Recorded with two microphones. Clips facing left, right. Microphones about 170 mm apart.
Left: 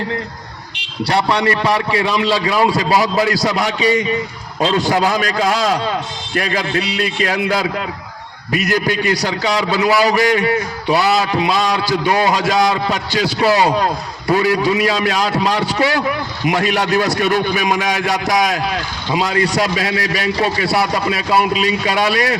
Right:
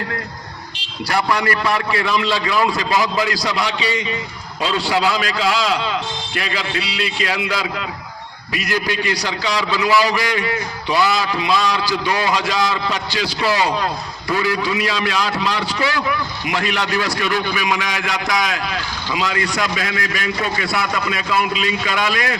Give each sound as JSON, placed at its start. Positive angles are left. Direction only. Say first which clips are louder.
{"t": 1.0, "sound": "a man's voice", "louder": "left 3 dB", "side_deg": 30}